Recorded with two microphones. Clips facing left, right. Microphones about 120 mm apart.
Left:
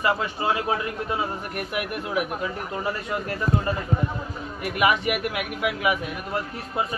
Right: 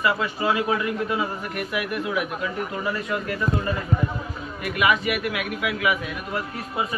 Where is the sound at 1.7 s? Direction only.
35° left (ahead or behind).